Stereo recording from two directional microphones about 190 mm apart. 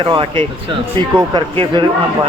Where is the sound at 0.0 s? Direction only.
25° right (ahead or behind).